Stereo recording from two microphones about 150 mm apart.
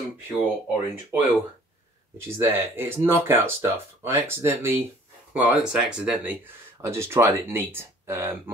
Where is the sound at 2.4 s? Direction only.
15° right (ahead or behind).